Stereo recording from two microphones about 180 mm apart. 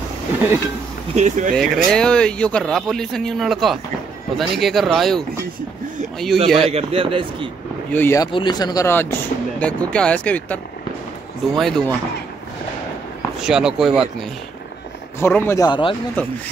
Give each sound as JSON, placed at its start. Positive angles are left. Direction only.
{"t": 1.1, "sound": "a man's voice", "side_deg": -40}
{"t": 1.5, "sound": "speech", "side_deg": 5}
{"t": 6.7, "sound": "a man's voice", "side_deg": -30}
{"t": 7.9, "sound": "speech", "side_deg": 15}
{"t": 8.3, "sound": "speech", "side_deg": 25}
{"t": 13.4, "sound": "speech", "side_deg": -5}
{"t": 15.1, "sound": "speech", "side_deg": 15}